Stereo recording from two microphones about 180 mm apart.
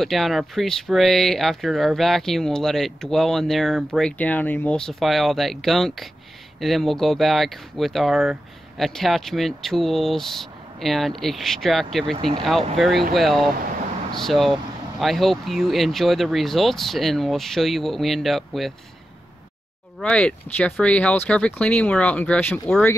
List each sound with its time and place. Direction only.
0.0 s speech: centre (ahead or behind)
12.2 s speech: 25° right (ahead or behind)
12.7 s speech: centre (ahead or behind)
20.0 s speech: 5° left (ahead or behind)